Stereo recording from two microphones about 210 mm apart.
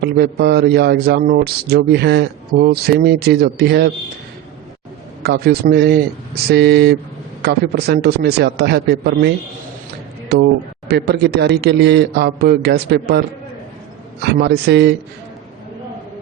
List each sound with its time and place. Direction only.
0.0 s speech: 50° right (ahead or behind)
5.2 s speech: 50° right (ahead or behind)
10.3 s speech: 50° right (ahead or behind)